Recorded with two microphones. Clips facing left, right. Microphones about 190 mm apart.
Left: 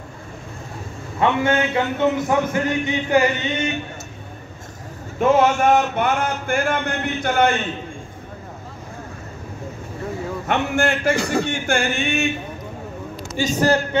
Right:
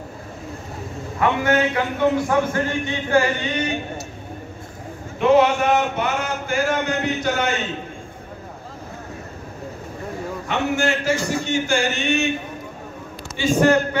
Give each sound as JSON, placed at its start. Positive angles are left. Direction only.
{"t": 1.2, "sound": "a man's voice", "side_deg": 25}
{"t": 5.2, "sound": "speech", "side_deg": 45}
{"t": 10.5, "sound": "speech", "side_deg": 55}
{"t": 13.4, "sound": "a man's voice", "side_deg": 40}